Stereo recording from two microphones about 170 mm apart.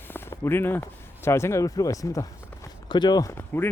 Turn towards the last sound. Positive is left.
turn(degrees=15)  # may be behind; listen again after turning